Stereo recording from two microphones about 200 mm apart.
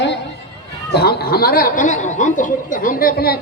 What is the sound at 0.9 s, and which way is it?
A man's voice, 50° left (ahead or behind).